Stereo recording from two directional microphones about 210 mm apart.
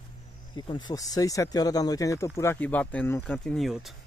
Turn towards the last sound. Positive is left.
turn(degrees=0)  # may be behind; listen again after turning